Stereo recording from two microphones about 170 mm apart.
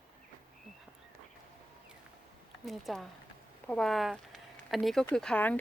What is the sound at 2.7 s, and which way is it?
Speech, centre (ahead or behind).